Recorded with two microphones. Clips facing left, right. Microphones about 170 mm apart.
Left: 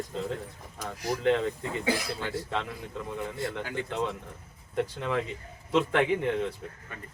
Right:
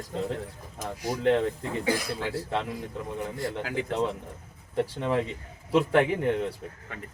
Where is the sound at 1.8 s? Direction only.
10° right (ahead or behind).